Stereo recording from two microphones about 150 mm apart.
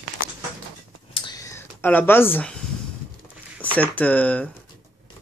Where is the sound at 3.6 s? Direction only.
10° left (ahead or behind).